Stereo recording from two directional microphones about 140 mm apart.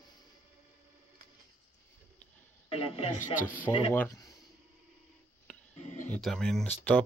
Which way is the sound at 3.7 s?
40° left (ahead or behind).